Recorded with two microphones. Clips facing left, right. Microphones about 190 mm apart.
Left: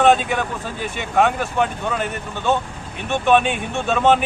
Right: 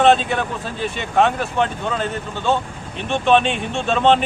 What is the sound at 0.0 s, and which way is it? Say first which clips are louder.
Speech: right 1 dB; 15° left (ahead or behind).